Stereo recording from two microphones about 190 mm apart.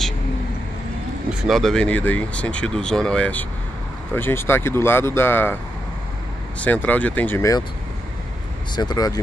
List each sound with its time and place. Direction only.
1.4 s speech: centre (ahead or behind)
6.6 s speech: 10° left (ahead or behind)
8.7 s speech: 20° left (ahead or behind)